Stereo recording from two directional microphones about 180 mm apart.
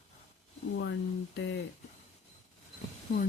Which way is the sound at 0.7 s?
90° left.